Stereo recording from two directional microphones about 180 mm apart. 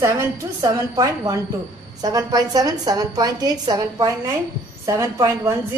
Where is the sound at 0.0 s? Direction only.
15° right (ahead or behind).